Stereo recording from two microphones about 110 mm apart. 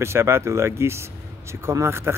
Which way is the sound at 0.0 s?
25° right (ahead or behind).